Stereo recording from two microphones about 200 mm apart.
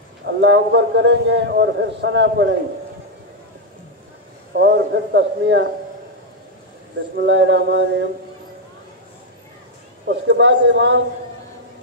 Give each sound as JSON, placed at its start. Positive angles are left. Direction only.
{"t": 0.2, "sound": "a man's voice", "side_deg": -65}
{"t": 4.6, "sound": "a man's voice", "side_deg": -60}
{"t": 7.2, "sound": "a man's voice", "side_deg": -65}
{"t": 10.0, "sound": "a man's voice", "side_deg": -60}